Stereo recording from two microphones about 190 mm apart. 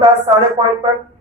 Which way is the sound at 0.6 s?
25° right (ahead or behind).